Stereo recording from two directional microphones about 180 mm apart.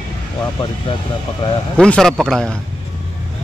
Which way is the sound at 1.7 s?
5° left (ahead or behind).